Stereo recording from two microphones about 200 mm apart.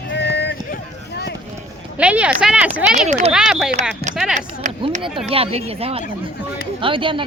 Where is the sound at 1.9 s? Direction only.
5° right (ahead or behind).